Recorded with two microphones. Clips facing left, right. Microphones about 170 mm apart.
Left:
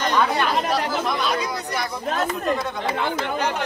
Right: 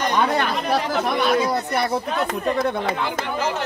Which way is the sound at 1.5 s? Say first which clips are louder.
Right 5 dB; 60° right (ahead or behind).